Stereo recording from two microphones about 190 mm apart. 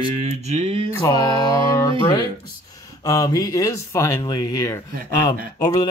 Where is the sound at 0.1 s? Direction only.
35° right (ahead or behind).